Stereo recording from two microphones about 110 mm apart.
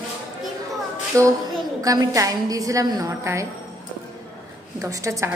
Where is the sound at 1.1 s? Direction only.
25° right (ahead or behind).